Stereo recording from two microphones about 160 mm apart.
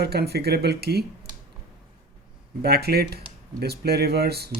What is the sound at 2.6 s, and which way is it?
Speech, 80° right.